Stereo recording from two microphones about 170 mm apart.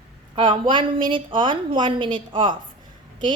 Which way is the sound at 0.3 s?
30° right (ahead or behind).